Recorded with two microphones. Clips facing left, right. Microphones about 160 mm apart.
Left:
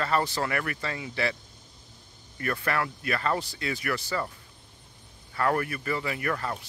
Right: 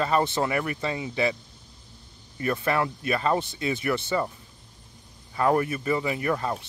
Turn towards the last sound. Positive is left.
turn(degrees=-20)  # may be behind; listen again after turning